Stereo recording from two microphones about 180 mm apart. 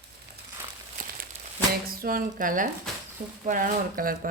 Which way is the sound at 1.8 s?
55° right (ahead or behind).